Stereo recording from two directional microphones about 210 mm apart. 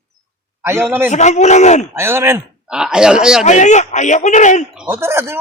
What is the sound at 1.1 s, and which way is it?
Speech, 35° left (ahead or behind).